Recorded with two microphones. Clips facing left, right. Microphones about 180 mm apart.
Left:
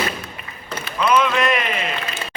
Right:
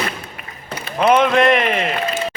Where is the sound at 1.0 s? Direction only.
55° right (ahead or behind).